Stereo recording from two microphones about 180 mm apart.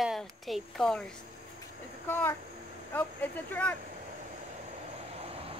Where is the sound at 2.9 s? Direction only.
10° left (ahead or behind).